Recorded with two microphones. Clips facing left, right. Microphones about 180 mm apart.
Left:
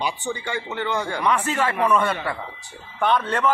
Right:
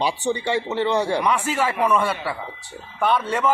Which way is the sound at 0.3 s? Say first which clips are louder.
Right 6 dB; 30° right (ahead or behind).